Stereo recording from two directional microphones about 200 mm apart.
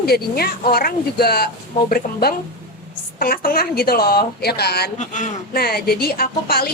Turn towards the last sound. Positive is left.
turn(degrees=50)  # may be behind; listen again after turning